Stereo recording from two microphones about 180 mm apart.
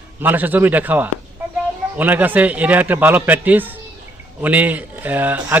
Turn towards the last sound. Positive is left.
turn(degrees=-10)  # may be behind; listen again after turning